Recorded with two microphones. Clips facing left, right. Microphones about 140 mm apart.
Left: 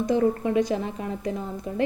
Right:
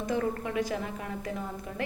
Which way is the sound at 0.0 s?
25° left (ahead or behind).